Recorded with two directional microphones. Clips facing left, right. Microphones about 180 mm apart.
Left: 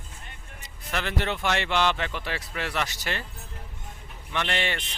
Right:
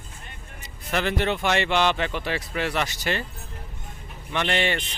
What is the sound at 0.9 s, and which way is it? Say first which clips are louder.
Speech: right 5 dB; 5° right (ahead or behind).